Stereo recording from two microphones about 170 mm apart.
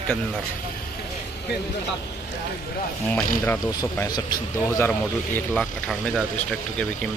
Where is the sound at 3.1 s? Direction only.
10° left (ahead or behind).